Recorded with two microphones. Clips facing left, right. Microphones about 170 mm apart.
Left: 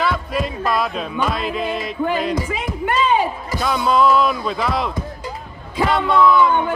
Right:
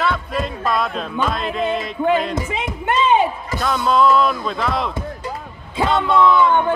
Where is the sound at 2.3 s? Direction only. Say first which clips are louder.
Left 1 dB; 25° right (ahead or behind).